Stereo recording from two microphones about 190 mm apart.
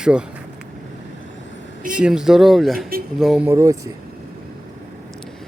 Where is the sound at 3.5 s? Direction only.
15° right (ahead or behind).